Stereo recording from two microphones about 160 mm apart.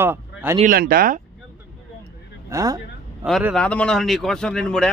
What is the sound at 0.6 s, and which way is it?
Speech, 65° right (ahead or behind).